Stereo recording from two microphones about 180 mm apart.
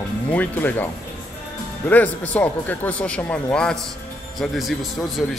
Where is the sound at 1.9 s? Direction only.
10° left (ahead or behind).